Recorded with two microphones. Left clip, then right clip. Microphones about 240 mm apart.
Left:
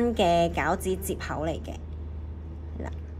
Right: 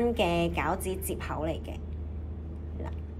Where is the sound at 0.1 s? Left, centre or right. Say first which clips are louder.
Left 5 dB; left.